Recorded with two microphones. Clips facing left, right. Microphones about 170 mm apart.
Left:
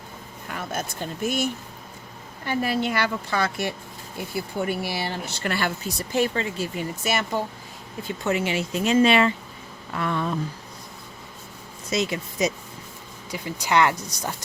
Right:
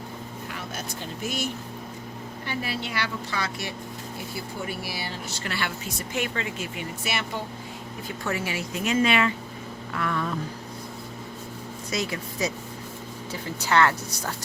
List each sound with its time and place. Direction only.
0.5 s speech: 50° left (ahead or behind)
2.5 s speech: 45° left (ahead or behind)
8.2 s speech: 20° left (ahead or behind)
11.9 s speech: 20° left (ahead or behind)